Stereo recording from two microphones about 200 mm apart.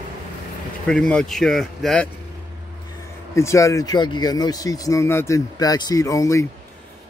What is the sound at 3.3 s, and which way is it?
Speech, 15° left (ahead or behind).